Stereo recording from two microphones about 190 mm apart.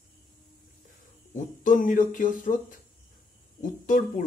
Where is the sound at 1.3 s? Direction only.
45° left (ahead or behind).